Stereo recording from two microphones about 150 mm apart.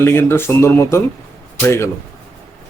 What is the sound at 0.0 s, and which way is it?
A man's voice, 15° left (ahead or behind).